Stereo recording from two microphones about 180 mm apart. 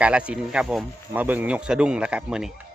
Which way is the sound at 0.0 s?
5° right (ahead or behind).